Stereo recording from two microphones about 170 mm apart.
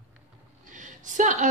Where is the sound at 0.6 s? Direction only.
50° right (ahead or behind).